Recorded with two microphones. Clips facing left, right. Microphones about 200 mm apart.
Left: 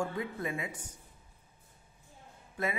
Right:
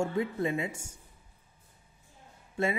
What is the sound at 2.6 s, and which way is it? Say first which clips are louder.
Speech: right 5 dB; 25° right (ahead or behind).